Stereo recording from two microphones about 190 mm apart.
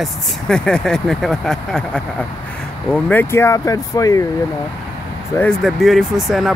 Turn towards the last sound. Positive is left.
turn(degrees=0)  # may be behind; listen again after turning